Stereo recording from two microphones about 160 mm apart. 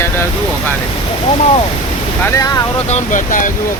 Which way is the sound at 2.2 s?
20° left (ahead or behind).